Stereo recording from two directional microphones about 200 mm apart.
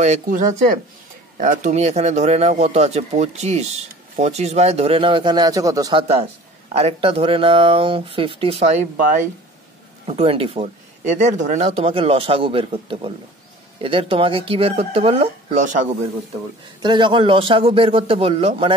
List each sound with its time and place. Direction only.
0.0 s a man's voice: 35° right (ahead or behind)
1.4 s a man's voice: 40° right (ahead or behind); by 6.0 s 20° right (ahead or behind)
6.7 s speech: 30° right (ahead or behind)
10.0 s speech: 30° right (ahead or behind)
16.8 s speech: 25° right (ahead or behind)